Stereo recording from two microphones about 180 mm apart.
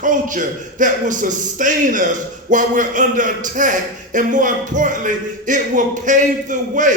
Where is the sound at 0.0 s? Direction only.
45° right (ahead or behind).